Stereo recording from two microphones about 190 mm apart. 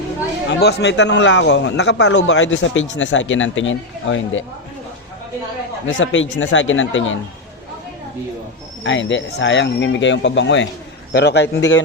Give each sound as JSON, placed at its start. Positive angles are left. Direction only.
{"t": 0.6, "sound": "a man's voice", "side_deg": 60}
{"t": 5.8, "sound": "speech", "side_deg": 90}
{"t": 8.8, "sound": "a man's voice", "side_deg": 75}
{"t": 11.1, "sound": "a man's voice", "side_deg": 60}